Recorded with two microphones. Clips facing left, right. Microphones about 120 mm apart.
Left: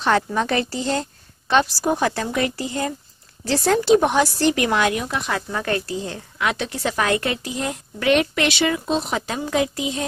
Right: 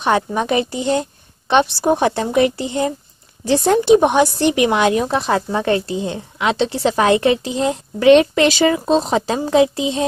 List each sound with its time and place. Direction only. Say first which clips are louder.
0.0 s a woman's voice: right 2 dB; 15° right (ahead or behind)